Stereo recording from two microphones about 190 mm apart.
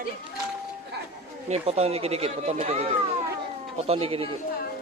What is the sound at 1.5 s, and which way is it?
Speech, 35° right (ahead or behind).